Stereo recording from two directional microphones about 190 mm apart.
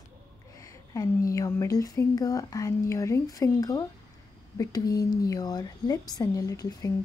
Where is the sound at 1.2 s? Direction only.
15° left (ahead or behind).